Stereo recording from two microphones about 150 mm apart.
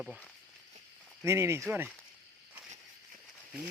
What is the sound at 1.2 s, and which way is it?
Speech, 20° right (ahead or behind).